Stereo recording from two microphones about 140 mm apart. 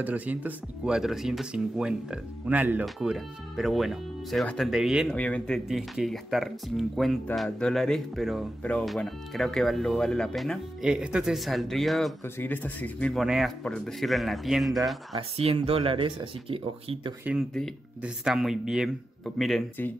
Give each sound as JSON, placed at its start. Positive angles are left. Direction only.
{"t": 0.0, "sound": "speech", "side_deg": -10}
{"t": 5.1, "sound": "speech", "side_deg": 10}
{"t": 5.7, "sound": "speech", "side_deg": -5}
{"t": 12.4, "sound": "speech", "side_deg": 10}
{"t": 13.2, "sound": "speech", "side_deg": 0}
{"t": 15.1, "sound": "speech", "side_deg": -40}
{"t": 17.2, "sound": "speech", "side_deg": -10}